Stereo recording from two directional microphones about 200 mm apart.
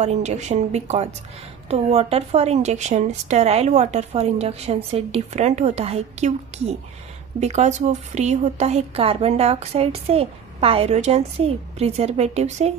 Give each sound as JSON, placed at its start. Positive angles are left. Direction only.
{"t": 0.0, "sound": "a woman's voice", "side_deg": -35}